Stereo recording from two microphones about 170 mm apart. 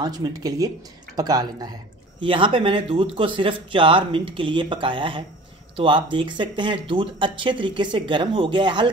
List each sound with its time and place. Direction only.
0.0 s speech: 20° right (ahead or behind)